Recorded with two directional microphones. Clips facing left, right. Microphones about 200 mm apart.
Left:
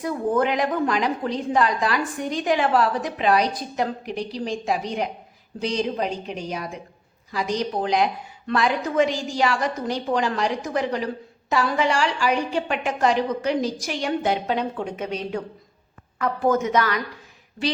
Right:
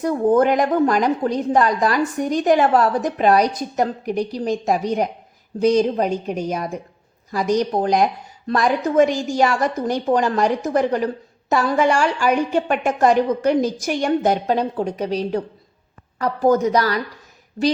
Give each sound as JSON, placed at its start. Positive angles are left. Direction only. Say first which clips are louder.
{"t": 0.0, "sound": "a woman's voice", "louder": "right 6 dB", "side_deg": -45}